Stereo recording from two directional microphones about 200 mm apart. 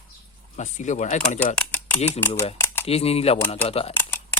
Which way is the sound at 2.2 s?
10° left (ahead or behind).